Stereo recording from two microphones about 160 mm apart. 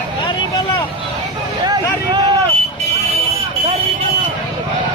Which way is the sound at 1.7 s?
25° right (ahead or behind).